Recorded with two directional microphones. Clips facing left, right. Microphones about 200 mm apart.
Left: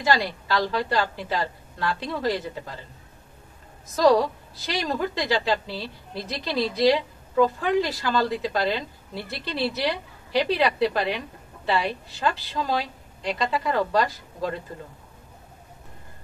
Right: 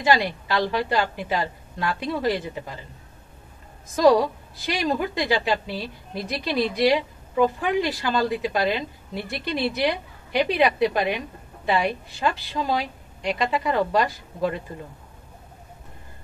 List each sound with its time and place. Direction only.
0.0 s a woman's voice: 15° right (ahead or behind)
4.6 s a woman's voice: 15° right (ahead or behind)